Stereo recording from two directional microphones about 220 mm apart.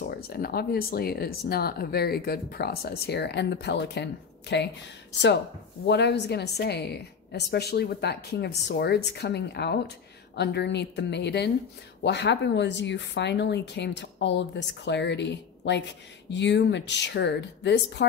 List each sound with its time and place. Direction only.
0.1 s speech: 45° left (ahead or behind)
5.9 s speech: 50° left (ahead or behind)